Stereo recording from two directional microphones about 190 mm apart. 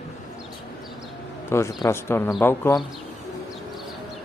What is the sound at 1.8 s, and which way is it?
Speech, 15° left (ahead or behind).